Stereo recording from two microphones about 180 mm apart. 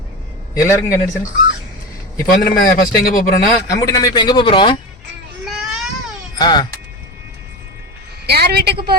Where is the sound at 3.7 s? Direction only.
20° left (ahead or behind).